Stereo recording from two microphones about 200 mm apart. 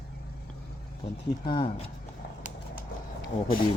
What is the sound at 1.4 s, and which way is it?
Speech, 25° left (ahead or behind).